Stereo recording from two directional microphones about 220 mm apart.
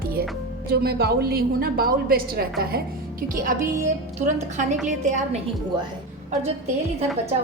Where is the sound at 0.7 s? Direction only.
45° right (ahead or behind).